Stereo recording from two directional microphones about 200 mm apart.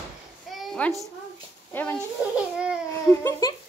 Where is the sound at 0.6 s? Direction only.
Centre (ahead or behind).